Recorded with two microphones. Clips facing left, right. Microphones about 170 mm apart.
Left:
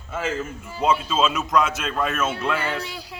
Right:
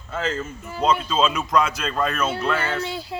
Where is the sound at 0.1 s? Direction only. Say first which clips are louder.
Even; 10° left (ahead or behind).